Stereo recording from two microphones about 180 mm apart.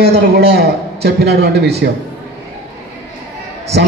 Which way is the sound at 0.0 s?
65° right (ahead or behind).